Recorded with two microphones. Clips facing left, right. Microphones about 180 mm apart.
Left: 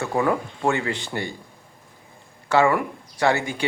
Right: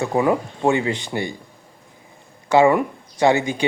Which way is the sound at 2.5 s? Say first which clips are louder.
Right 4 dB; 20° right (ahead or behind).